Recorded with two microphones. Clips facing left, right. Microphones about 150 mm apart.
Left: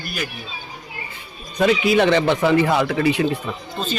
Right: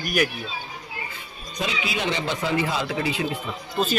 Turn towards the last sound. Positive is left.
turn(degrees=-5)  # may be behind; listen again after turning